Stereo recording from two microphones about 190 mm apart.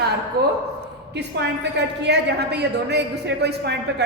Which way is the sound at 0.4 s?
55° right (ahead or behind).